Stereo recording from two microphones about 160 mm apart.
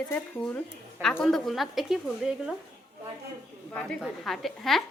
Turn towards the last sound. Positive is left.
turn(degrees=0)  # may be behind; listen again after turning